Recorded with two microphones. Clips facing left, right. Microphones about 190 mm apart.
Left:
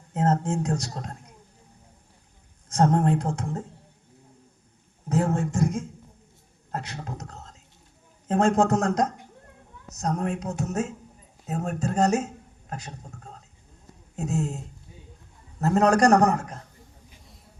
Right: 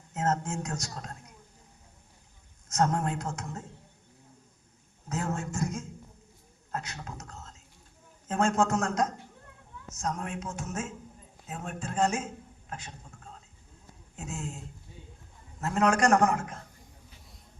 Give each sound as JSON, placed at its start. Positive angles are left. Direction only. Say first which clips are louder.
{"t": 0.1, "sound": "speech", "louder": "left 6 dB", "side_deg": 35}
{"t": 2.6, "sound": "speech", "louder": "left 6 dB", "side_deg": 30}
{"t": 5.0, "sound": "a man's voice", "louder": "left 8 dB", "side_deg": 30}
{"t": 15.6, "sound": "speech", "louder": "left 6 dB", "side_deg": 40}